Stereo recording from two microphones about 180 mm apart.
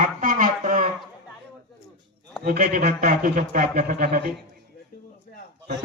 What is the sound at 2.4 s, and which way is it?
Speech, 55° right (ahead or behind).